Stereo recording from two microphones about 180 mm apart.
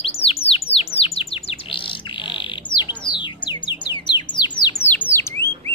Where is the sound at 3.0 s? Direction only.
25° left (ahead or behind).